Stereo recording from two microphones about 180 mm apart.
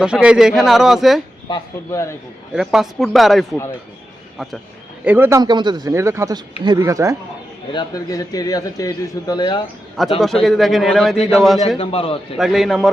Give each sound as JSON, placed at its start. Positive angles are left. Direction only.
{"t": 0.0, "sound": "speech", "side_deg": -5}
{"t": 1.9, "sound": "a man's voice", "side_deg": 15}
{"t": 2.5, "sound": "speech", "side_deg": 0}
{"t": 5.0, "sound": "speech", "side_deg": -10}
{"t": 5.4, "sound": "speech", "side_deg": -25}
{"t": 7.7, "sound": "speech", "side_deg": 20}
{"t": 10.0, "sound": "speech", "side_deg": 0}
{"t": 11.8, "sound": "a man's voice", "side_deg": 30}
{"t": 12.4, "sound": "speech", "side_deg": 0}